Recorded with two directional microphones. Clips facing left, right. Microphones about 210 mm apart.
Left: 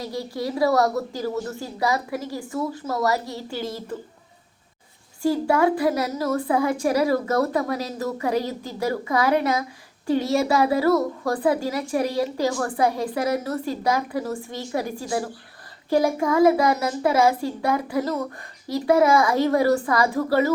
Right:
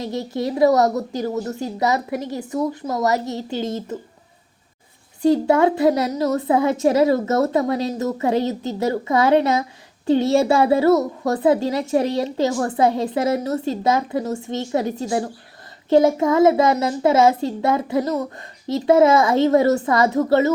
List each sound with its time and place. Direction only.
0.0 s a woman's voice: 20° right (ahead or behind)
5.2 s a woman's voice: 20° right (ahead or behind)